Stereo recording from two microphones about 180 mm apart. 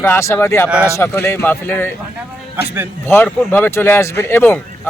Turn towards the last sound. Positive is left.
turn(degrees=10)  # may be behind; listen again after turning